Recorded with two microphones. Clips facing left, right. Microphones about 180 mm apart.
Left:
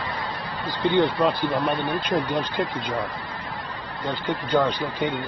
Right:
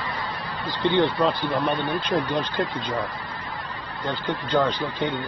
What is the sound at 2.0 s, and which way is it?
Speech, 10° left (ahead or behind).